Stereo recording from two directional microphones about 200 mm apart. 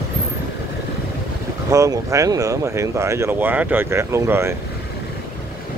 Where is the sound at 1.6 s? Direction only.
15° right (ahead or behind).